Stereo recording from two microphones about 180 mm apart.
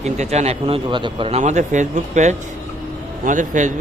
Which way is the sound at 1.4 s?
40° right (ahead or behind).